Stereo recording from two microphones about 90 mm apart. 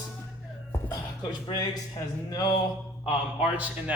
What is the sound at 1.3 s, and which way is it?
Speech, 50° left (ahead or behind).